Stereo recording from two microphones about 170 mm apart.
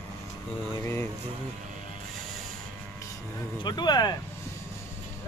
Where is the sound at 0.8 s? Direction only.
15° left (ahead or behind).